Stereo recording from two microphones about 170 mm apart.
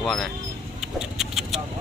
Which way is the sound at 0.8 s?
5° right (ahead or behind).